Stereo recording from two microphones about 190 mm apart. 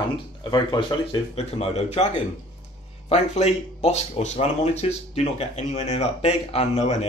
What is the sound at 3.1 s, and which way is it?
Speech, 35° left (ahead or behind).